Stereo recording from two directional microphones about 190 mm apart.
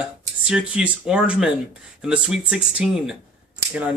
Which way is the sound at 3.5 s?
10° right (ahead or behind).